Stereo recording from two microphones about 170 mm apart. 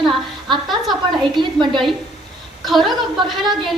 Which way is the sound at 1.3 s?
30° right (ahead or behind).